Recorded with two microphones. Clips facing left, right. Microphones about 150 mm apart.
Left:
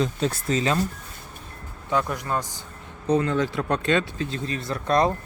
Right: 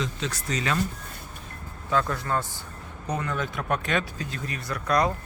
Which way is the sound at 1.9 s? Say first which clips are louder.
Left 1 dB; 15° left (ahead or behind).